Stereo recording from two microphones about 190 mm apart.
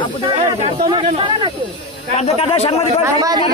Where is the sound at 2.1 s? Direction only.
35° left (ahead or behind).